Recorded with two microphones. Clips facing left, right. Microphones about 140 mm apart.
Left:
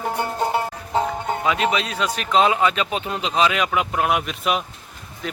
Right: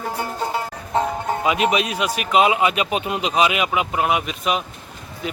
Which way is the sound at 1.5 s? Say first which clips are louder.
Right 2 dB; 15° right (ahead or behind).